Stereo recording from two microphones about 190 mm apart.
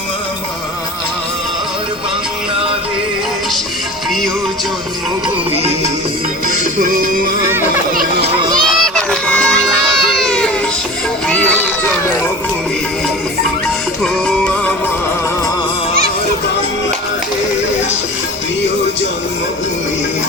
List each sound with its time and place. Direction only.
8.2 s children playing: 20° right (ahead or behind)
8.8 s baby cry: 5° left (ahead or behind)
14.0 s music: 5° left (ahead or behind)